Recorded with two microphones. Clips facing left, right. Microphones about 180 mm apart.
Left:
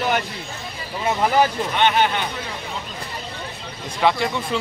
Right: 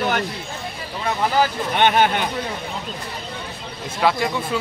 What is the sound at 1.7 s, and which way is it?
Speech, 50° right (ahead or behind).